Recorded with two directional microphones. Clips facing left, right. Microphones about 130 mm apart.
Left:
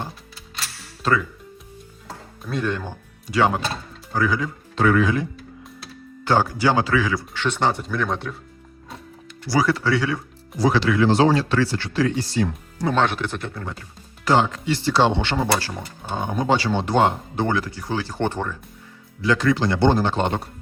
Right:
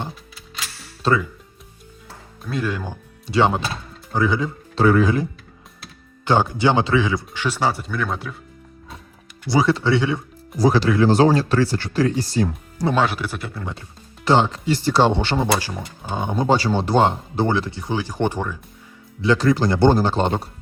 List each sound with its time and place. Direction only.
1.0 s speech: 30° right (ahead or behind)
2.4 s speech: centre (ahead or behind)
3.2 s speech: 25° right (ahead or behind)
6.2 s speech: 20° right (ahead or behind)
7.4 s speech: 5° right (ahead or behind)
9.5 s speech: 25° right (ahead or behind)
10.6 s speech: 40° right (ahead or behind)
12.9 s speech: 5° right (ahead or behind)
14.3 s speech: 30° right (ahead or behind)
14.7 s speech: 45° right (ahead or behind)
15.4 s speech: 15° right (ahead or behind)
16.3 s speech: 35° right (ahead or behind); by 18.5 s 10° right (ahead or behind)
19.2 s speech: 30° right (ahead or behind)